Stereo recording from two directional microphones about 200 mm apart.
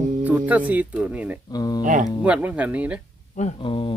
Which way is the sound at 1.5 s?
20° left (ahead or behind).